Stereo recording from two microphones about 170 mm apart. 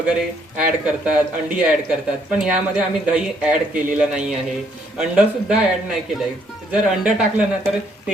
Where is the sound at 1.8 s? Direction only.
5° right (ahead or behind).